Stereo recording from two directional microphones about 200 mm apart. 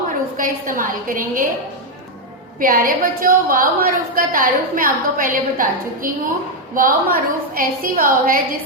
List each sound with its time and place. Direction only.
0.3 s a woman's voice: 40° right (ahead or behind)
2.6 s a woman's voice: 45° right (ahead or behind)